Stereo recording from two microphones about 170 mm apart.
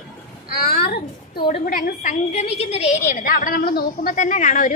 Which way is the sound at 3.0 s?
55° left (ahead or behind).